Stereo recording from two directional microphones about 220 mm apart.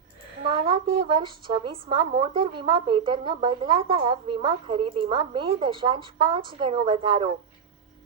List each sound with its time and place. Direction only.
0.4 s a woman's voice: 25° right (ahead or behind)